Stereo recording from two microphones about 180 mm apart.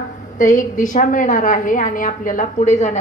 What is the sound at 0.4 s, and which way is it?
A woman's voice, 45° left (ahead or behind).